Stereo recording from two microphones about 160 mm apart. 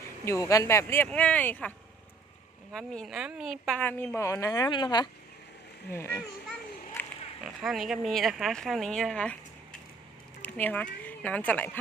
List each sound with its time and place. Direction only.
0.0 s speech: 20° left (ahead or behind)
2.7 s speech: 5° left (ahead or behind)
3.8 s a woman's voice: 15° left (ahead or behind); by 5.0 s 30° left (ahead or behind)
5.9 s speech: 20° left (ahead or behind)
7.0 s a sound: 15° left (ahead or behind)
7.4 s speech: centre (ahead or behind)
10.4 s speech: 10° left (ahead or behind)